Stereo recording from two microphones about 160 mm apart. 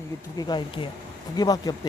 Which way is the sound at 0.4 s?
30° left (ahead or behind).